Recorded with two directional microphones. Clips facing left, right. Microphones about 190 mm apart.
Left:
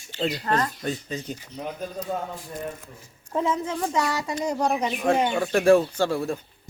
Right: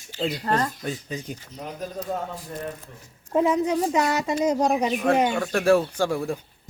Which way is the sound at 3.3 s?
15° right (ahead or behind).